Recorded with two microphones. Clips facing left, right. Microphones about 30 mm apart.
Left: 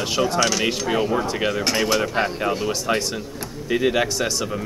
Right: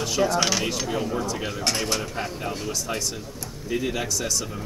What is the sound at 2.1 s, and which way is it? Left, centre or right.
Speech, left.